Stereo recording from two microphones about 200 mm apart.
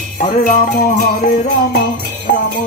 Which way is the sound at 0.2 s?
40° left (ahead or behind).